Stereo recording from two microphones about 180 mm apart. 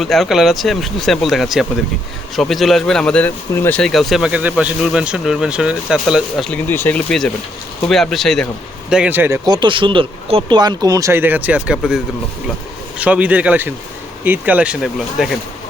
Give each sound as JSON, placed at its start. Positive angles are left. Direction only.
{"t": 0.0, "sound": "speech", "side_deg": 0}
{"t": 9.5, "sound": "speech", "side_deg": -25}